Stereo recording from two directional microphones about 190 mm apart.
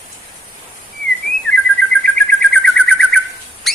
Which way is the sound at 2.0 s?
5° left (ahead or behind).